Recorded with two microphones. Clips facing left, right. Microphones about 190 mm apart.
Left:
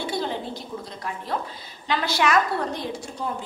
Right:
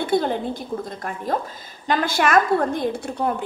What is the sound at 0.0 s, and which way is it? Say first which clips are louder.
A woman's voice: right 7 dB; 55° right (ahead or behind).